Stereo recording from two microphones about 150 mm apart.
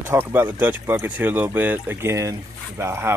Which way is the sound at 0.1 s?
15° right (ahead or behind).